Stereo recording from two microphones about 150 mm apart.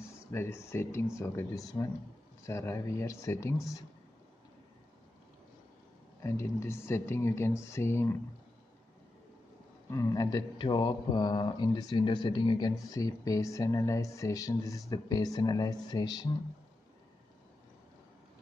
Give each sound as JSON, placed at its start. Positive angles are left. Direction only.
{"t": 0.3, "sound": "speech", "side_deg": 15}
{"t": 6.2, "sound": "speech", "side_deg": 20}
{"t": 9.8, "sound": "speech", "side_deg": 25}